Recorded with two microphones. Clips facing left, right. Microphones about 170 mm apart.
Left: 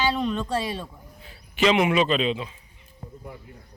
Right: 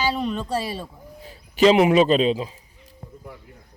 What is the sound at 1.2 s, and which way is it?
A man's voice, 35° right (ahead or behind).